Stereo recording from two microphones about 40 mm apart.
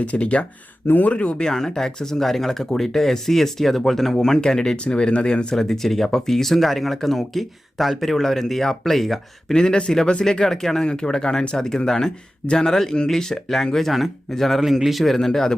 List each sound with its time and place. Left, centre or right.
0.0 s speech: left
1.5 s speech: centre
5.5 s speech: centre
9.5 s speech: centre
10.8 s speech: centre
14.6 s speech: centre